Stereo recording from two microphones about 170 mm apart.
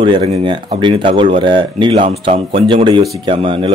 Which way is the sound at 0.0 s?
35° right (ahead or behind).